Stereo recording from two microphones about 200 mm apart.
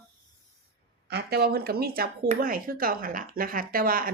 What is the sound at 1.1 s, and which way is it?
Speech, 55° right (ahead or behind).